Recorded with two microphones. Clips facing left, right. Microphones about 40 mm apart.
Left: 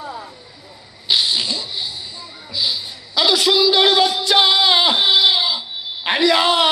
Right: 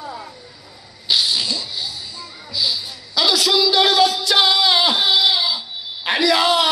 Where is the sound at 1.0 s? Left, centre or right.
Left.